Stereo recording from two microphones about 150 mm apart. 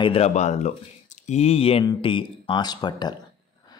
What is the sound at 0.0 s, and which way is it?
Speech, 40° left (ahead or behind).